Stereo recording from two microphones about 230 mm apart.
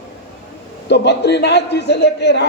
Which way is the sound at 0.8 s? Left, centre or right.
Left.